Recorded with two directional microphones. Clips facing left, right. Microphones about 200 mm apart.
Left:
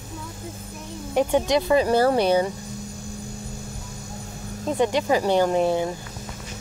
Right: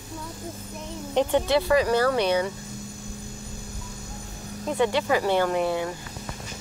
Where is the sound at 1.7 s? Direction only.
30° left (ahead or behind).